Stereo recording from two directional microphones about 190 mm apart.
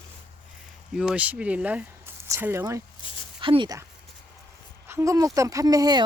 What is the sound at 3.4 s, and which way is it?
Speech, 25° right (ahead or behind).